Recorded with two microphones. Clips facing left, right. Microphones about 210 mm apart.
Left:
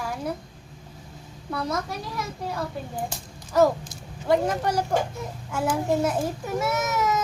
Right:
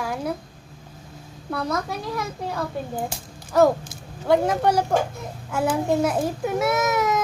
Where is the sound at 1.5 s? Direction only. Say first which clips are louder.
Right 2 dB; 55° right (ahead or behind).